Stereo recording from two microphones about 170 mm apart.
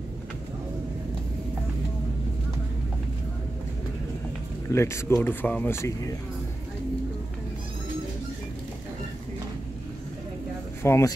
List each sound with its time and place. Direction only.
4.6 s speech: 15° left (ahead or behind)
10.8 s speech: 15° left (ahead or behind)